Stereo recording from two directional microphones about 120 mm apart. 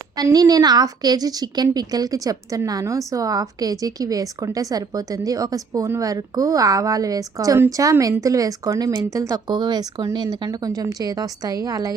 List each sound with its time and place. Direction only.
0.2 s a woman's voice: 30° right (ahead or behind)